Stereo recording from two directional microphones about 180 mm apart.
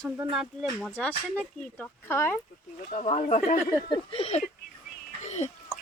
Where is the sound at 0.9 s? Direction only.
5° left (ahead or behind).